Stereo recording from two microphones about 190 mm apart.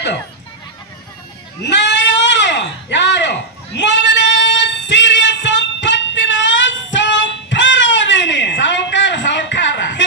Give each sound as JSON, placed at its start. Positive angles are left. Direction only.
{"t": 1.7, "sound": "bleat", "side_deg": 65}
{"t": 3.8, "sound": "female singing", "side_deg": 65}